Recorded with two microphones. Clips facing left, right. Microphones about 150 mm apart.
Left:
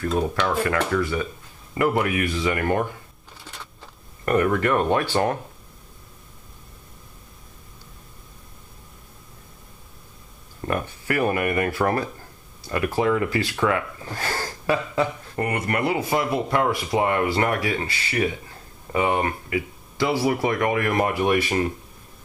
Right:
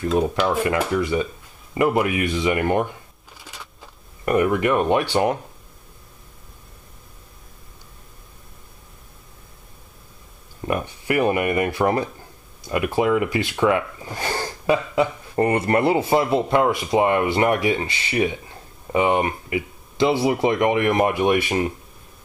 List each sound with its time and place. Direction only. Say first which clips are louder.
0.5 s speech: right 2 dB; 10° right (ahead or behind)
3.4 s a sound: even; 5° right (ahead or behind)
10.6 s speech: right 2 dB; 15° right (ahead or behind)
15.3 s speech: right 7 dB; 30° right (ahead or behind)